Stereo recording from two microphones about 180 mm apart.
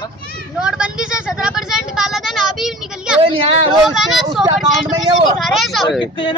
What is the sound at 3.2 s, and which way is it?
Speech, 30° right (ahead or behind).